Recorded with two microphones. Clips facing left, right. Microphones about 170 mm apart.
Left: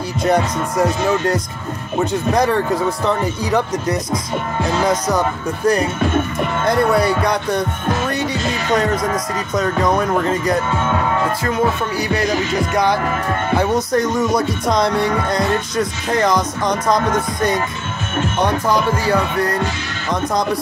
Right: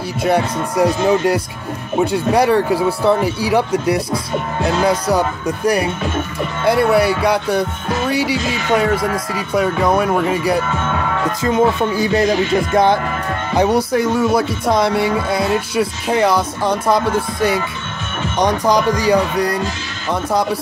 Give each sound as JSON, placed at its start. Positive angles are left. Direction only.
{"t": 0.2, "sound": "speech", "side_deg": -10}
{"t": 6.6, "sound": "speech", "side_deg": -5}
{"t": 11.4, "sound": "speech", "side_deg": -20}
{"t": 13.6, "sound": "speech", "side_deg": -10}